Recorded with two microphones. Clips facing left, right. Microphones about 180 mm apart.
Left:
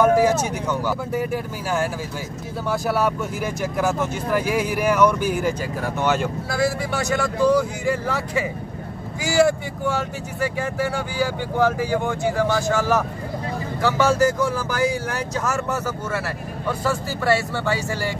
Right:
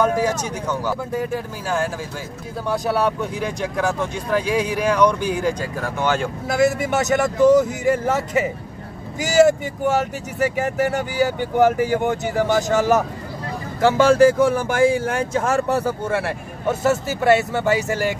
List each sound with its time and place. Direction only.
0.0 s speech: 10° left (ahead or behind)
6.5 s a man's voice: 20° right (ahead or behind)
9.5 s a man's voice: 20° right (ahead or behind)